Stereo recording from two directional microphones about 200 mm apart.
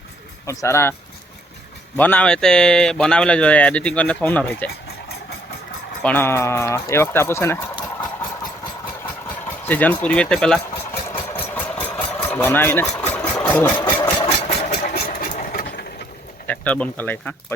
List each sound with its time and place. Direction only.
0.4 s speech: 15° left (ahead or behind)
2.0 s speech: 5° left (ahead or behind)
6.0 s speech: 10° left (ahead or behind)
9.6 s speech: 10° left (ahead or behind)
11.1 s engine: 10° left (ahead or behind)
13.7 s engine: 20° left (ahead or behind)
14.9 s engine: 50° left (ahead or behind)
16.5 s speech: 5° left (ahead or behind)